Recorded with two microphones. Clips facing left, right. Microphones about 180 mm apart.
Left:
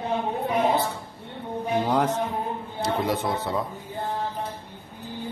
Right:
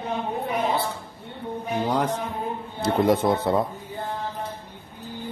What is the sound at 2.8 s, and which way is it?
Speech, 50° right (ahead or behind).